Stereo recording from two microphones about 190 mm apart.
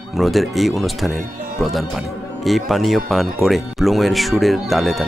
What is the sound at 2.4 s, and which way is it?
Speech, centre (ahead or behind).